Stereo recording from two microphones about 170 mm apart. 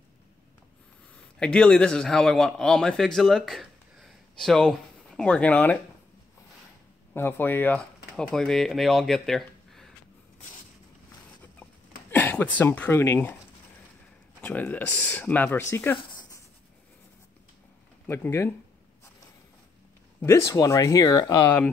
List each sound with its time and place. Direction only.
1.4 s a man's voice: 5° left (ahead or behind)
7.2 s speech: 10° left (ahead or behind)
12.1 s speech: 10° left (ahead or behind)
14.4 s speech: 10° left (ahead or behind)
18.0 s speech: 10° left (ahead or behind)
20.2 s speech: 15° left (ahead or behind)
21.4 s speech: 10° left (ahead or behind)